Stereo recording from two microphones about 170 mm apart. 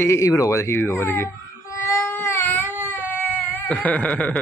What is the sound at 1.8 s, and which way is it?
Baby cry, 15° left (ahead or behind).